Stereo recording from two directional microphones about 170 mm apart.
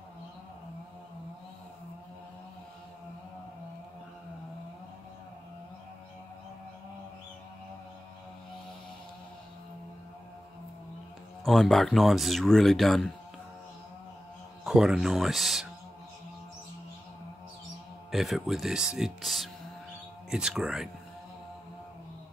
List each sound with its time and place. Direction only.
11.4 s speech: centre (ahead or behind)
14.6 s speech: 5° right (ahead or behind)
18.1 s speech: centre (ahead or behind)